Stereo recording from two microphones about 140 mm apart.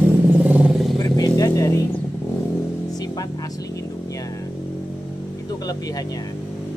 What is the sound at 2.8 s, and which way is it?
Speech, 25° left (ahead or behind).